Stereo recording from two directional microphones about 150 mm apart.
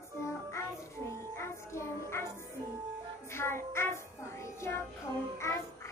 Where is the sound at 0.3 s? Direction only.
20° left (ahead or behind).